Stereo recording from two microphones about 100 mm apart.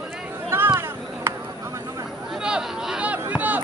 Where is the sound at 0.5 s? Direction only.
25° right (ahead or behind).